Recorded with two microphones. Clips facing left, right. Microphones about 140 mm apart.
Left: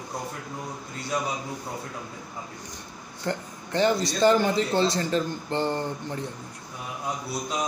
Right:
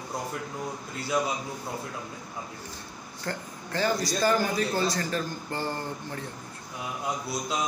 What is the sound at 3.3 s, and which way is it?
Speech, 20° left (ahead or behind).